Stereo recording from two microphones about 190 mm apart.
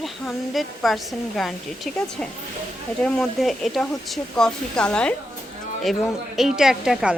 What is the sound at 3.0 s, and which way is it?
A woman's voice, 5° left (ahead or behind).